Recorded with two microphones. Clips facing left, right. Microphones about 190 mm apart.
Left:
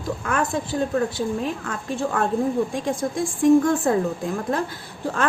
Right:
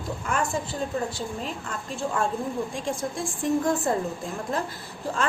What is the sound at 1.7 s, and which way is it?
Speech, 60° left (ahead or behind).